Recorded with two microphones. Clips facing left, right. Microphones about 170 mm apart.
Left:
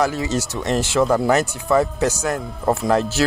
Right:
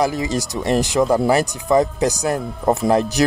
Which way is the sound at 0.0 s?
15° right (ahead or behind).